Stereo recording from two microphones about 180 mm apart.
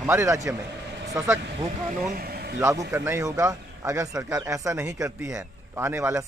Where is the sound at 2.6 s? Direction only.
15° right (ahead or behind).